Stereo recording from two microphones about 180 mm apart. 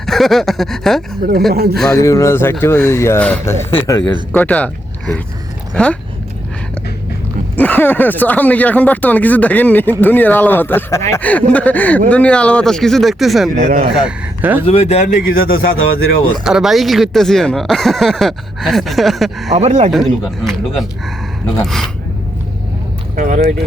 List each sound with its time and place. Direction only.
0.0 s speech: centre (ahead or behind)
1.5 s speech: 60° right (ahead or behind)
1.9 s speech: 20° left (ahead or behind)
5.7 s speech: 5° left (ahead or behind)
7.5 s speech: 10° left (ahead or behind)
13.7 s speech: 60° right (ahead or behind)
14.0 s speech: 10° right (ahead or behind)
14.7 s speech: 35° left (ahead or behind)
15.0 s speech: 55° left (ahead or behind)
16.4 s speech: 5° right (ahead or behind)
19.5 s speech: 40° right (ahead or behind)
19.9 s speech: centre (ahead or behind)
23.1 s speech: 45° right (ahead or behind)